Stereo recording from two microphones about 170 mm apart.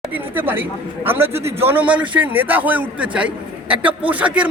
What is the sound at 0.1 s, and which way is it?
A man's voice, 10° right (ahead or behind).